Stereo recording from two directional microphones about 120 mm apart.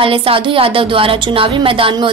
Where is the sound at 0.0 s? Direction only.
50° right (ahead or behind).